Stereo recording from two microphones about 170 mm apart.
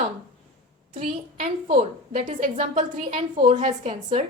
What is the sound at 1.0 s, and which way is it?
A woman's voice, 35° right (ahead or behind).